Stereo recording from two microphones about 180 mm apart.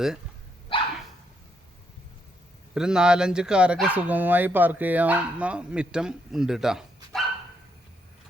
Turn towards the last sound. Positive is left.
turn(degrees=0)  # may be behind; listen again after turning